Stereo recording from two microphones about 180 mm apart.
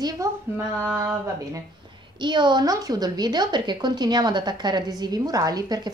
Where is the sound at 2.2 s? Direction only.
25° right (ahead or behind).